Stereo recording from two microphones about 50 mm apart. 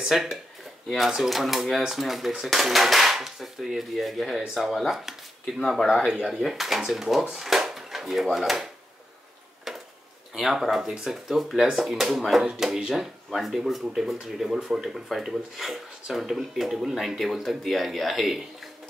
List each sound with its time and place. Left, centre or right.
0.1 s speech: centre
9.7 s a sound: centre
10.4 s speech: centre